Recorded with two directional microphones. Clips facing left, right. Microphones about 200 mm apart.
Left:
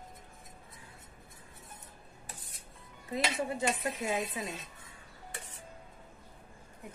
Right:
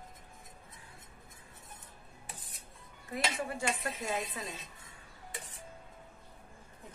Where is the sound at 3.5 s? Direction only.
20° left (ahead or behind).